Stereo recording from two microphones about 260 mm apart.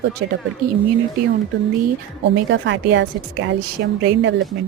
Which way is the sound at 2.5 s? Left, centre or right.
Right.